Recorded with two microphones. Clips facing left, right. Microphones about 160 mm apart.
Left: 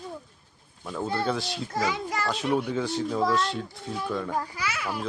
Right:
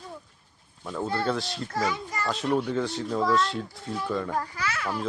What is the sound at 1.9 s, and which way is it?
Speech, 85° left.